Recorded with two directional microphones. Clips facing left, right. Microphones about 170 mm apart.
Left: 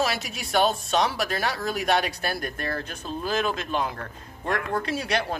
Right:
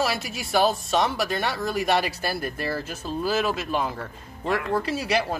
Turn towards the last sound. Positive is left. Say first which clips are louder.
# right 2 dB
turn(degrees=-5)  # may be behind; listen again after turning